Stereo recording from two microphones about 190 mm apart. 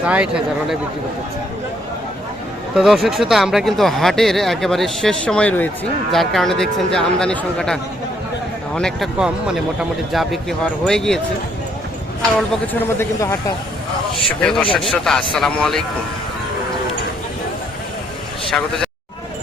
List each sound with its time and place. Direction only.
0.0 s speech: 5° right (ahead or behind)
2.7 s speech: centre (ahead or behind)
13.0 s speech: 15° left (ahead or behind)
14.1 s speech: 5° left (ahead or behind)